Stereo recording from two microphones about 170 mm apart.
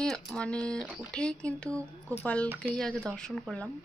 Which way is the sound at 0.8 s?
10° right (ahead or behind).